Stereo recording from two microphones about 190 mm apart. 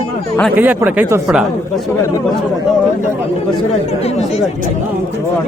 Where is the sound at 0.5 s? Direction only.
10° right (ahead or behind).